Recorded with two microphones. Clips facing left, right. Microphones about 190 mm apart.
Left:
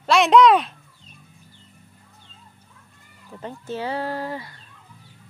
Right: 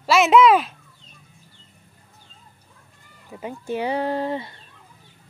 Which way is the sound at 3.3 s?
10° right (ahead or behind).